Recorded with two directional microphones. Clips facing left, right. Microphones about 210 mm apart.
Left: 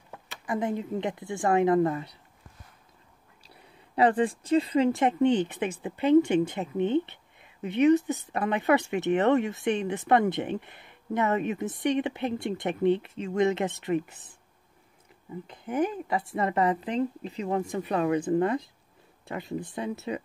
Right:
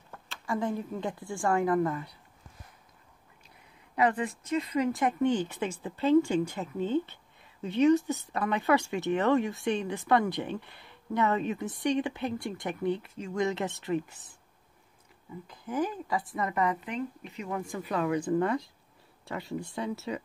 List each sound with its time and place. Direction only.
0.1 s speech: 15° left (ahead or behind)
3.4 s speech: 30° left (ahead or behind)
15.4 s speech: 25° left (ahead or behind)